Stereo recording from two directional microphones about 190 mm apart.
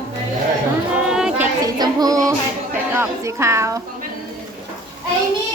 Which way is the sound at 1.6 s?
20° right (ahead or behind).